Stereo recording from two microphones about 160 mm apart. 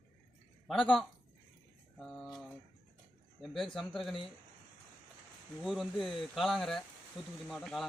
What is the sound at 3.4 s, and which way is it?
Speech, centre (ahead or behind).